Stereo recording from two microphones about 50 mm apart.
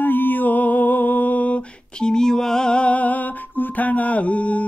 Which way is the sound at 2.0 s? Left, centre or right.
Centre.